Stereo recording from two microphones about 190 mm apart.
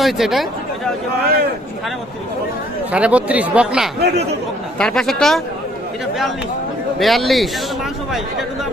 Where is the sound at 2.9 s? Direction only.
5° right (ahead or behind).